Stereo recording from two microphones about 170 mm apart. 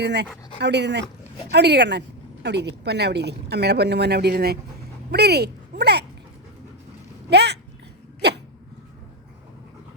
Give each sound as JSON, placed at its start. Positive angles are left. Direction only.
{"t": 0.0, "sound": "speech", "side_deg": -80}
{"t": 0.6, "sound": "speech", "side_deg": -90}
{"t": 7.3, "sound": "speech", "side_deg": -80}